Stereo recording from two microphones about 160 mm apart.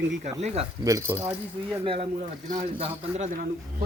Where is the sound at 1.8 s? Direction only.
35° right (ahead or behind).